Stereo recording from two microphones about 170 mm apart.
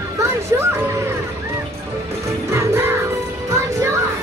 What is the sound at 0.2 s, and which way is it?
Music, 15° right (ahead or behind).